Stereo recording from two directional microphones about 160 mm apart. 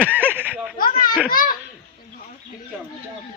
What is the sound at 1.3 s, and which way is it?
Babbling, 65° left (ahead or behind).